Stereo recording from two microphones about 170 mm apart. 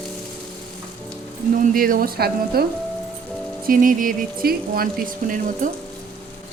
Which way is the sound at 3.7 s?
55° right (ahead or behind).